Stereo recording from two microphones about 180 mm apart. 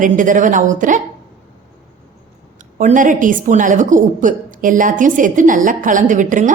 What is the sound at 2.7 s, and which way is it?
A woman's voice, 45° right (ahead or behind).